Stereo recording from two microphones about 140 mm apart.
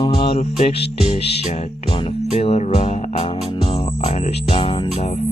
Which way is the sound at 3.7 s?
50° left (ahead or behind).